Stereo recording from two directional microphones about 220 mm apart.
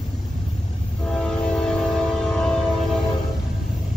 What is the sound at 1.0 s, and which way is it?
Train, 5° left (ahead or behind).